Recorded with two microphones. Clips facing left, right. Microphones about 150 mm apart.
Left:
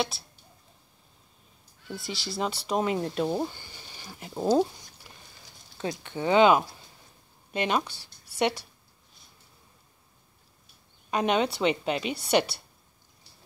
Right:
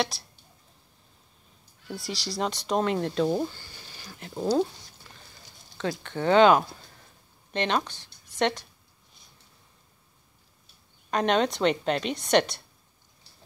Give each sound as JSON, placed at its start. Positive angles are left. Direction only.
{"t": 0.1, "sound": "speech", "side_deg": 0}
{"t": 1.9, "sound": "speech", "side_deg": 0}
{"t": 5.1, "sound": "a sound", "side_deg": 15}
{"t": 5.8, "sound": "speech", "side_deg": 15}
{"t": 11.1, "sound": "speech", "side_deg": 5}